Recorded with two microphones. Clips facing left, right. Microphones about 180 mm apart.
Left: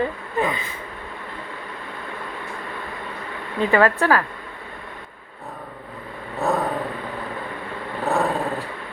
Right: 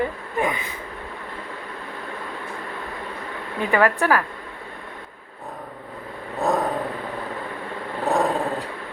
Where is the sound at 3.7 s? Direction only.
15° right (ahead or behind).